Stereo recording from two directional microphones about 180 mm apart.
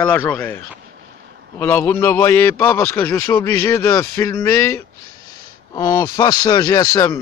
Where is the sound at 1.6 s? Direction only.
10° left (ahead or behind).